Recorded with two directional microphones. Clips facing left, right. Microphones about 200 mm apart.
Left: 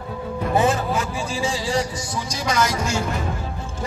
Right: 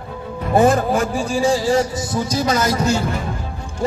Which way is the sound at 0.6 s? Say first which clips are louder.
Right 6 dB; 45° right (ahead or behind).